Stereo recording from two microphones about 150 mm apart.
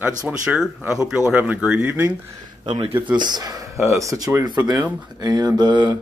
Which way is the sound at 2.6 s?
35° right (ahead or behind).